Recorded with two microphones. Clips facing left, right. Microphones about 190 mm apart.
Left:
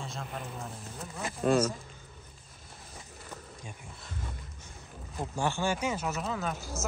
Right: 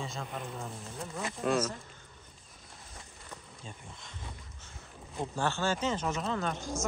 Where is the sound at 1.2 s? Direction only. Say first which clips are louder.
Left 4 dB; 30° left (ahead or behind).